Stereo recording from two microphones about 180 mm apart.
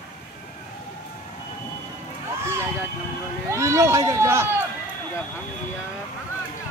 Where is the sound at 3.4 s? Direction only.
15° right (ahead or behind).